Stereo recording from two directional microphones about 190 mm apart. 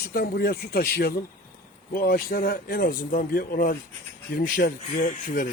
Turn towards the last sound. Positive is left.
turn(degrees=45)  # may be behind; listen again after turning